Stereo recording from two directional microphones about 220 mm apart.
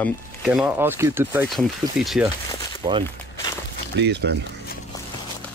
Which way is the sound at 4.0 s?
50° right (ahead or behind).